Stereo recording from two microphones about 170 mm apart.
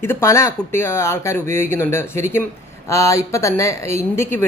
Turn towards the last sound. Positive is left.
turn(degrees=15)  # may be behind; listen again after turning